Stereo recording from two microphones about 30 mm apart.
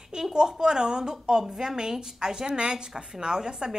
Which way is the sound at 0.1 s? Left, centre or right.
Right.